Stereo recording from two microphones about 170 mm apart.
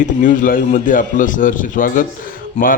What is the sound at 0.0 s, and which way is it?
A man's voice, 50° left (ahead or behind).